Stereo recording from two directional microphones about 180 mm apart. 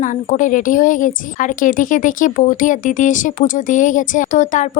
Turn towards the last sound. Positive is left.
turn(degrees=45)  # may be behind; listen again after turning